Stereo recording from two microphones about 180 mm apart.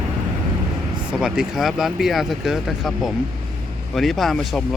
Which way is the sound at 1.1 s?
Centre (ahead or behind).